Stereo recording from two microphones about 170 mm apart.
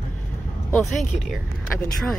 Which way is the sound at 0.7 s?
Centre (ahead or behind).